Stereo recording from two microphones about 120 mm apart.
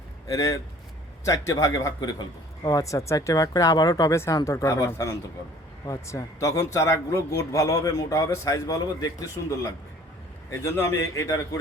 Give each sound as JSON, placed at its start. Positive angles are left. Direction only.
{"t": 0.3, "sound": "a man's voice", "side_deg": 30}